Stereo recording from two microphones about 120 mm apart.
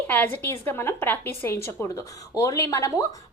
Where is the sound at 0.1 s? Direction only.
15° left (ahead or behind).